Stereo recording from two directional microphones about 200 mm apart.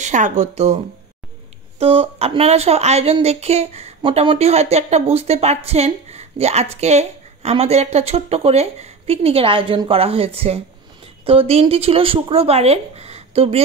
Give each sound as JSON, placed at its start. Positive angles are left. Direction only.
{"t": 0.0, "sound": "a woman's voice", "side_deg": -35}
{"t": 1.8, "sound": "a woman's voice", "side_deg": -30}